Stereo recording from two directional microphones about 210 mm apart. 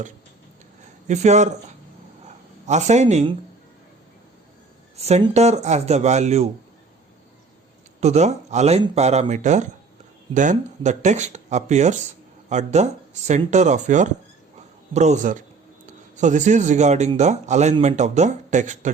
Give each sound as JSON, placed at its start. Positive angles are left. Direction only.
{"t": 1.0, "sound": "speech", "side_deg": -35}
{"t": 2.2, "sound": "a sound", "side_deg": -35}
{"t": 4.9, "sound": "speech", "side_deg": -30}
{"t": 8.0, "sound": "speech", "side_deg": -35}